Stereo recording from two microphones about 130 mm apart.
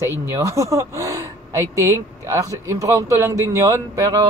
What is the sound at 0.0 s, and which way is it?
Speech, 20° right (ahead or behind).